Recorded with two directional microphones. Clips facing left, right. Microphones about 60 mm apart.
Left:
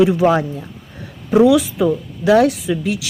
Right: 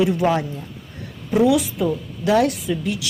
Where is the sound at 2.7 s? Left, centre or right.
Left.